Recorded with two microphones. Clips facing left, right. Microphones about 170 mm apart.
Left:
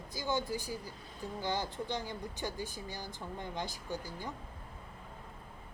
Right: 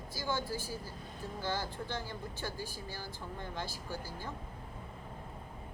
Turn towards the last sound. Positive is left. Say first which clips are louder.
# left 1 dB
turn(degrees=20)  # may be behind; listen again after turning